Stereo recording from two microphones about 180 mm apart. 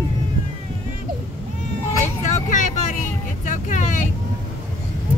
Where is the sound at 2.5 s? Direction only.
45° left (ahead or behind).